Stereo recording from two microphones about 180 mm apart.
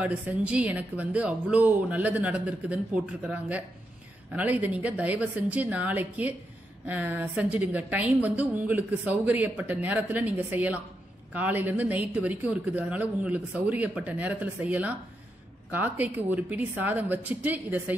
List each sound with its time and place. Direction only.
0.0 s speech: 5° right (ahead or behind)